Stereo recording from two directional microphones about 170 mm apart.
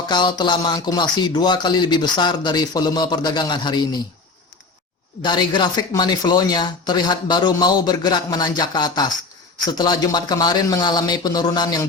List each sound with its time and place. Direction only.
0.1 s speech: 25° left (ahead or behind)
5.2 s speech: 25° left (ahead or behind)